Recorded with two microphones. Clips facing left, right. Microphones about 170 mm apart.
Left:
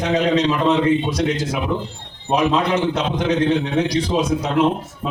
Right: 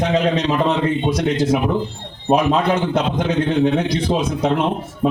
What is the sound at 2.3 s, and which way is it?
A man's voice, 55° right (ahead or behind).